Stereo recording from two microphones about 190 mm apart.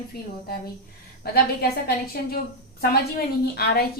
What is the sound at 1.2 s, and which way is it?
A woman's voice, 55° left (ahead or behind).